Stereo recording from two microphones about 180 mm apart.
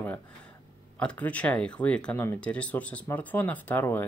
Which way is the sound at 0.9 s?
5° left (ahead or behind).